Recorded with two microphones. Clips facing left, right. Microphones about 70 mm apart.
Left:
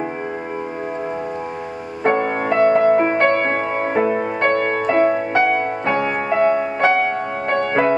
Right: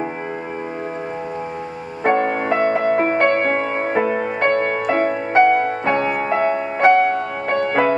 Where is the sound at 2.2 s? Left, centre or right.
Centre.